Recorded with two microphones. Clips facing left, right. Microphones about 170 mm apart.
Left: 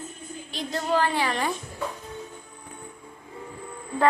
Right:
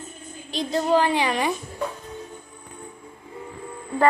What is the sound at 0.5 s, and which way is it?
A woman's voice, 15° right (ahead or behind).